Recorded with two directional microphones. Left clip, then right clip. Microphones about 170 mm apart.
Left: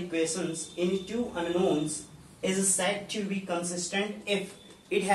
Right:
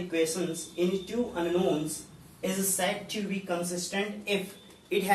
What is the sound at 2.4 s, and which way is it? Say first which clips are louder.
Speech: left 1 dB; 15° left (ahead or behind).